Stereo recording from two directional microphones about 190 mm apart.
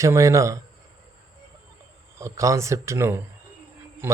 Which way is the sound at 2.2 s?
15° right (ahead or behind).